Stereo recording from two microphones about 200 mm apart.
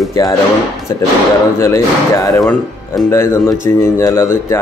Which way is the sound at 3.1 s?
10° left (ahead or behind).